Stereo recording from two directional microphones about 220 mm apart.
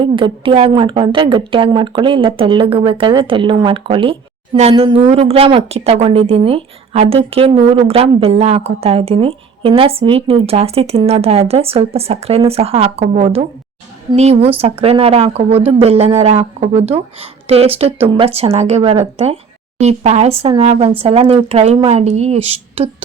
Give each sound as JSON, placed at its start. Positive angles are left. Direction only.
{"t": 0.0, "sound": "a woman's voice", "side_deg": -25}